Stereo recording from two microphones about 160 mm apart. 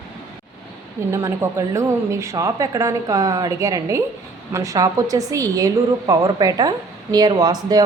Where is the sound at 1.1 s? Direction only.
20° right (ahead or behind).